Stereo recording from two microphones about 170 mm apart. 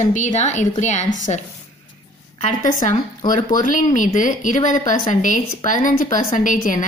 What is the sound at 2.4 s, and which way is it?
A woman's voice, 45° left (ahead or behind).